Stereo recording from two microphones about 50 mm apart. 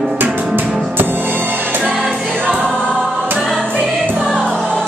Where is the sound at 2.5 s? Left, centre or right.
Left.